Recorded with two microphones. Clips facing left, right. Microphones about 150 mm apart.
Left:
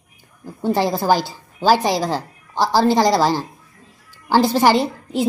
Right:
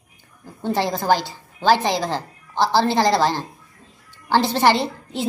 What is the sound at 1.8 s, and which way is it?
A woman's voice, 10° left (ahead or behind).